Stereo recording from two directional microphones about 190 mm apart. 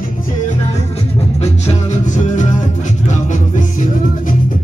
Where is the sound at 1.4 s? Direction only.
35° left (ahead or behind).